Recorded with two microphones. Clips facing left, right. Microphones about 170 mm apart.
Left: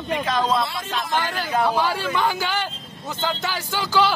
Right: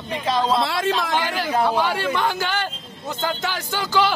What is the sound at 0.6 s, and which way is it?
Speech, 85° right.